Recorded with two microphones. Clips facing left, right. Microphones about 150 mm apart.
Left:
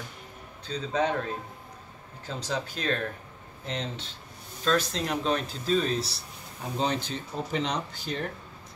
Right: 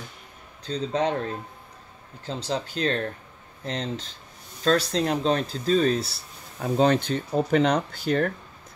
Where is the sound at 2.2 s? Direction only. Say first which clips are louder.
Right 3 dB; 30° right (ahead or behind); by 6.1 s 50° right (ahead or behind).